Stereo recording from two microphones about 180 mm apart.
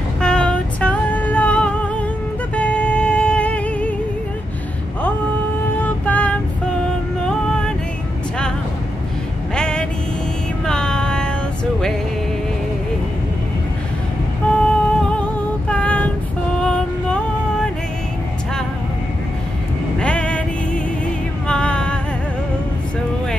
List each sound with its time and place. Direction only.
0.2 s music: 5° left (ahead or behind)
5.8 s a sound: 10° left (ahead or behind)
7.2 s music: 5° left (ahead or behind)
9.6 s vehicle: 5° left (ahead or behind)
10.6 s music: 5° left (ahead or behind)
14.5 s music: 5° left (ahead or behind)
15.7 s child singing: 5° left (ahead or behind)
16.5 s music: 5° left (ahead or behind)
20.0 s music: 5° left (ahead or behind)